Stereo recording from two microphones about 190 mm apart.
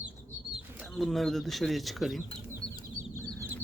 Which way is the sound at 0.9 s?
Centre (ahead or behind).